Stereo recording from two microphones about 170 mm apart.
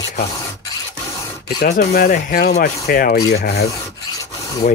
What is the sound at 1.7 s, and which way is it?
Speech, 55° left (ahead or behind).